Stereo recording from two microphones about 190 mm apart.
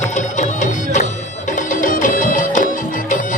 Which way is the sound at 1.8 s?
45° left (ahead or behind).